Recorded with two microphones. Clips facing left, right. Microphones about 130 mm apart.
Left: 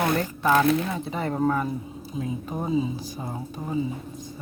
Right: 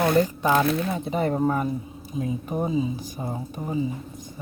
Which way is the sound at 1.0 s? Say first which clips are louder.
Right 2 dB; 20° right (ahead or behind).